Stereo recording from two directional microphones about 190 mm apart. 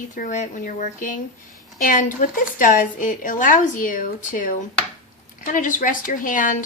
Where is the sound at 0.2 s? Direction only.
45° left (ahead or behind).